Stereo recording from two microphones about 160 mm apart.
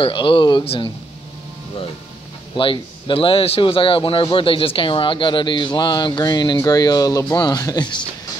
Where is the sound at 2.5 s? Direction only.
30° left (ahead or behind).